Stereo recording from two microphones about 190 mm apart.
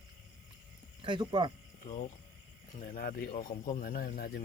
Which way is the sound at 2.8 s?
50° left (ahead or behind).